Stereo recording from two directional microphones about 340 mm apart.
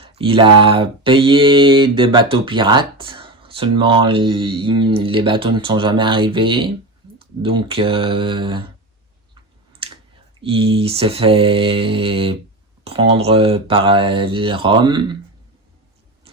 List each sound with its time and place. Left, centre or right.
0.0 s mantra: centre
10.4 s mantra: centre